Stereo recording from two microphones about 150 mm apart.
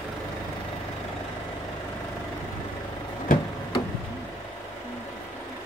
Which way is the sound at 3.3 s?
65° left (ahead or behind).